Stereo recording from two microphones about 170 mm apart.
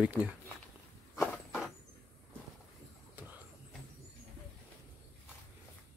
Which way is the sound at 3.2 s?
10° right (ahead or behind).